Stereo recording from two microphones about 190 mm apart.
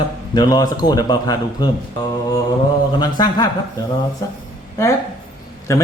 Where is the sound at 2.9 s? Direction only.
20° left (ahead or behind).